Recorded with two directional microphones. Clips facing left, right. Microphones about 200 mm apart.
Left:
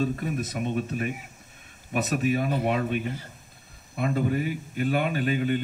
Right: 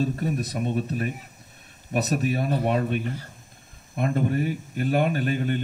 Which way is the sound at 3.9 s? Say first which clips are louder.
Right 1 dB; 45° right (ahead or behind).